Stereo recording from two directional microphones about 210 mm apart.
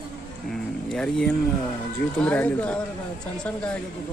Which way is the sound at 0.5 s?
5° left (ahead or behind).